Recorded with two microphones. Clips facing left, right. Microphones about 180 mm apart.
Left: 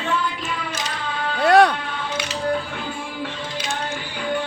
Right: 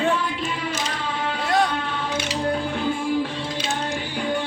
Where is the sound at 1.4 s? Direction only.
70° left (ahead or behind).